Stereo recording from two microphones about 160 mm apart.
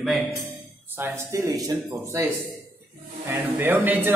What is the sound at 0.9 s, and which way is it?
A man's voice, 15° right (ahead or behind).